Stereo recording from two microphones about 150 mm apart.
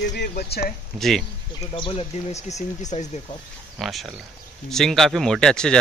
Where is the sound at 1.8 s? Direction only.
35° left (ahead or behind).